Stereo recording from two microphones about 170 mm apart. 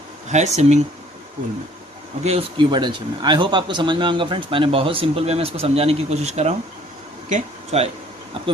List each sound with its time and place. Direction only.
0.3 s speech: 40° right (ahead or behind)
2.2 s speech: 30° right (ahead or behind)
7.2 s a sound: 40° right (ahead or behind)